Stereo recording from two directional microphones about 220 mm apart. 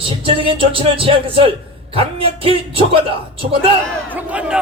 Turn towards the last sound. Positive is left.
turn(degrees=-5)  # may be behind; listen again after turning